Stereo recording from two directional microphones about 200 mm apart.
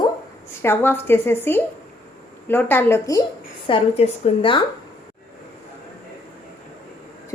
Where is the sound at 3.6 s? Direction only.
30° left (ahead or behind).